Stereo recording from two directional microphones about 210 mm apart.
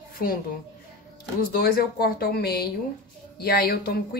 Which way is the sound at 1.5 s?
45° left (ahead or behind).